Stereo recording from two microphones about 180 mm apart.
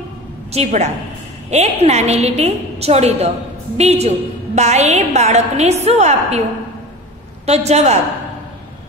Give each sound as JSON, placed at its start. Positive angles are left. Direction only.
{"t": 0.5, "sound": "a woman's voice", "side_deg": -40}
{"t": 7.4, "sound": "a woman's voice", "side_deg": -35}